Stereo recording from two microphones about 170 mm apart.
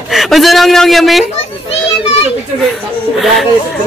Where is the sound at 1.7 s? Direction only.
35° left (ahead or behind).